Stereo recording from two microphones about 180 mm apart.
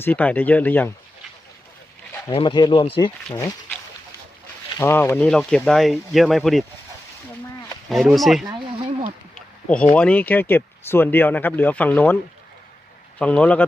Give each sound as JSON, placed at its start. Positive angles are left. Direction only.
{"t": 0.0, "sound": "speech", "side_deg": 10}
{"t": 2.3, "sound": "speech", "side_deg": 25}
{"t": 3.2, "sound": "speech", "side_deg": 10}
{"t": 4.8, "sound": "speech", "side_deg": 15}
{"t": 7.9, "sound": "speech", "side_deg": 0}
{"t": 9.3, "sound": "a sound", "side_deg": 5}
{"t": 9.9, "sound": "speech", "side_deg": 5}
{"t": 13.1, "sound": "speech", "side_deg": 5}